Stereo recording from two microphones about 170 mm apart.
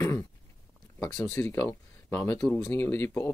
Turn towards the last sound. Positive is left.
turn(degrees=15)  # may be behind; listen again after turning